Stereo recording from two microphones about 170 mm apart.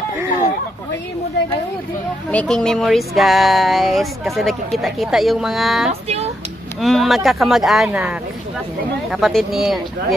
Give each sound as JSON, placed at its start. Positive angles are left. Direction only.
{"t": 2.3, "sound": "speech", "side_deg": 5}
{"t": 5.9, "sound": "speech", "side_deg": -40}
{"t": 6.8, "sound": "speech", "side_deg": 0}
{"t": 9.1, "sound": "speech", "side_deg": 0}